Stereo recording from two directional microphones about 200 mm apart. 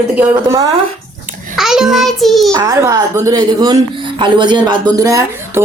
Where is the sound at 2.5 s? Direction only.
20° right (ahead or behind).